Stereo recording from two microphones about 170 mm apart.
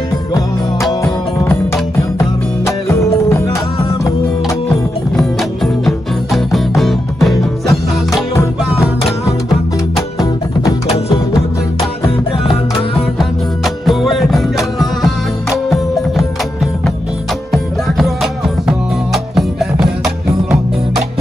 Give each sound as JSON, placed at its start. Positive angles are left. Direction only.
{"t": 1.0, "sound": "music", "side_deg": 15}
{"t": 5.1, "sound": "music", "side_deg": 0}
{"t": 8.7, "sound": "music", "side_deg": 0}
{"t": 9.9, "sound": "music", "side_deg": 20}
{"t": 13.8, "sound": "music", "side_deg": 0}
{"t": 17.5, "sound": "music", "side_deg": 0}